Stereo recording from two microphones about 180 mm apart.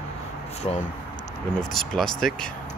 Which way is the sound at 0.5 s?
40° left (ahead or behind).